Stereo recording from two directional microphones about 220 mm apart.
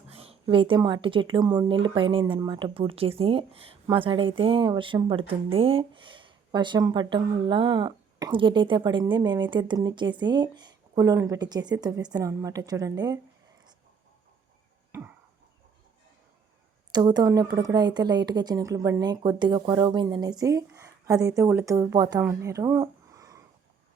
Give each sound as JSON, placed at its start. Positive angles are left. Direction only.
{"t": 0.1, "sound": "speech", "side_deg": -25}
{"t": 14.9, "sound": "a sound", "side_deg": -10}
{"t": 16.9, "sound": "a woman's voice", "side_deg": -20}